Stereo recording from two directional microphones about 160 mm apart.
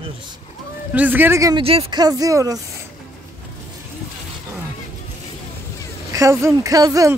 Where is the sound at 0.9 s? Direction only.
10° right (ahead or behind).